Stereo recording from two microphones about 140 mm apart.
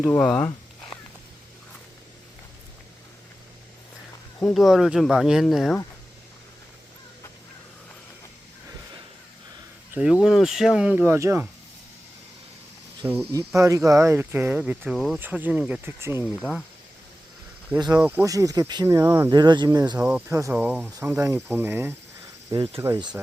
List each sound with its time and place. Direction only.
0.1 s speech: 5° left (ahead or behind)
4.4 s speech: 5° left (ahead or behind)
9.9 s speech: 5° right (ahead or behind)
13.3 s speech: 20° right (ahead or behind); by 15.2 s centre (ahead or behind)
15.2 s speech: 10° right (ahead or behind)
16.2 s speech: 5° right (ahead or behind)
17.7 s speech: 30° right (ahead or behind)
18.0 s speech: 15° right (ahead or behind)
18.3 s speech: 25° right (ahead or behind)
19.3 s speech: 30° right (ahead or behind)
20.0 s speech: 10° right (ahead or behind)
20.2 s speech: 20° right (ahead or behind)
22.5 s speech: 25° right (ahead or behind)